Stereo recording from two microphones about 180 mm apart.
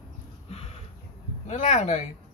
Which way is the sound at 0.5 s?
35° left (ahead or behind).